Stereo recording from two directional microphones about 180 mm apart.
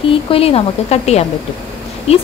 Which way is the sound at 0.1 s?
30° left (ahead or behind).